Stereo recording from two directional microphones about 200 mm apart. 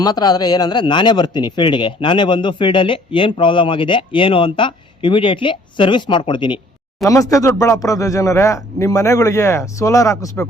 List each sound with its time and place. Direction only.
0.0 s speech: 20° left (ahead or behind)